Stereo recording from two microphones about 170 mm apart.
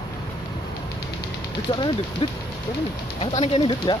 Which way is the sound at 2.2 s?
35° left (ahead or behind).